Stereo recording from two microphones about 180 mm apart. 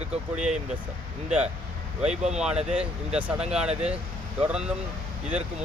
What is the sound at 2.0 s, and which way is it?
Speech, 40° right (ahead or behind).